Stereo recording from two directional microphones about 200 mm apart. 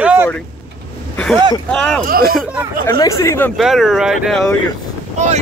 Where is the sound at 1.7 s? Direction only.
5° left (ahead or behind).